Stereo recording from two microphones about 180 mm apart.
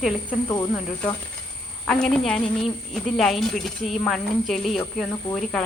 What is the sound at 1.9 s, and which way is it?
A woman's voice, 5° left (ahead or behind).